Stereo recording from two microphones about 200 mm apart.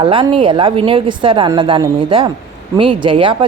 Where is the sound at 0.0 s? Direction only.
25° right (ahead or behind).